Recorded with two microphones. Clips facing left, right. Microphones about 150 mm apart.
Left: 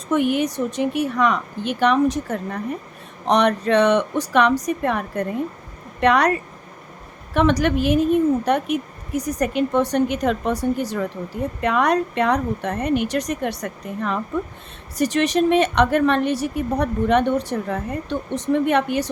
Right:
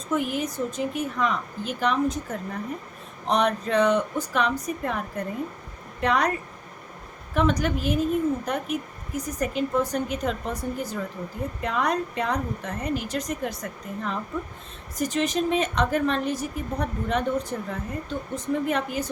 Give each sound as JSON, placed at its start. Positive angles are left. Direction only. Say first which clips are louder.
{"t": 0.1, "sound": "a woman's voice", "louder": "left 7 dB", "side_deg": 75}